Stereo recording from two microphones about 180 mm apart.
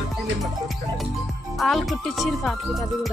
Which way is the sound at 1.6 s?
Centre (ahead or behind).